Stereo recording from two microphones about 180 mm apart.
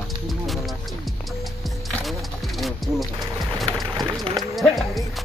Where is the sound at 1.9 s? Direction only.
Centre (ahead or behind).